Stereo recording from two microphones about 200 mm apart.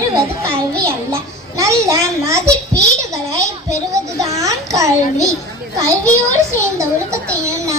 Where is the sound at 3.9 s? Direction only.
15° right (ahead or behind).